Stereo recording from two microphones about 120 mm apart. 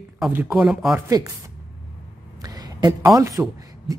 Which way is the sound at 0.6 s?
5° right (ahead or behind).